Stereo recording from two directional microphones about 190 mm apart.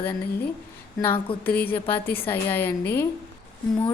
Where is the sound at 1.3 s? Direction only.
30° left (ahead or behind).